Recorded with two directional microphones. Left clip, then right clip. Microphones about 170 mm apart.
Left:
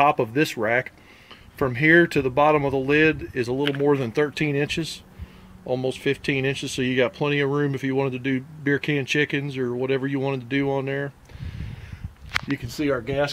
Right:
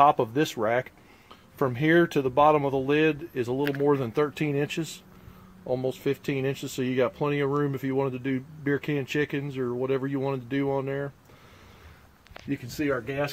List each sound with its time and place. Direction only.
0.0 s speech: 5° left (ahead or behind)
12.6 s speech: centre (ahead or behind)